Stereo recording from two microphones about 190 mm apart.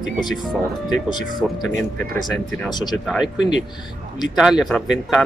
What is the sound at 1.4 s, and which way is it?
Speech, 5° left (ahead or behind).